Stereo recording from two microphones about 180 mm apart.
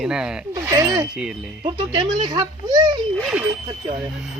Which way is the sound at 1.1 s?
5° right (ahead or behind).